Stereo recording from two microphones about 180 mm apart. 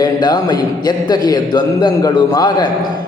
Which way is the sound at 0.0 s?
20° left (ahead or behind).